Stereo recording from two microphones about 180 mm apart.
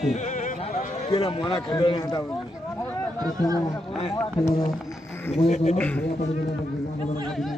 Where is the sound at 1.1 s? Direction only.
30° left (ahead or behind).